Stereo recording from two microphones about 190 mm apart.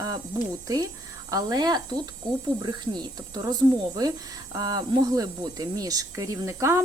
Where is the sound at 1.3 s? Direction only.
20° right (ahead or behind).